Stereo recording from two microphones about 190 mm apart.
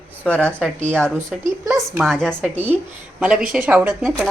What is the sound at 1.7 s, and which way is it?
Speech, 15° right (ahead or behind).